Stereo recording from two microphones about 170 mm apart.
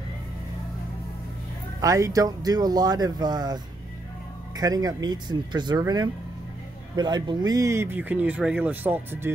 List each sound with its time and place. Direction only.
1.8 s speech: 20° right (ahead or behind)